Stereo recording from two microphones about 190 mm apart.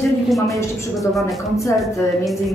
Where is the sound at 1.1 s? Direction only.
Centre (ahead or behind).